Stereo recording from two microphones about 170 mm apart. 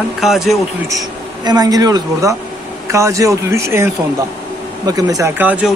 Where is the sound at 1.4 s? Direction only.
25° right (ahead or behind).